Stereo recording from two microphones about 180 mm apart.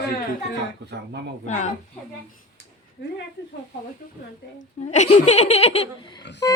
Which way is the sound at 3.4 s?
65° left (ahead or behind).